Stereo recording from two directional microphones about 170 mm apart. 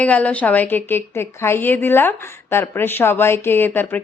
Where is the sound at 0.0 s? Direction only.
10° left (ahead or behind).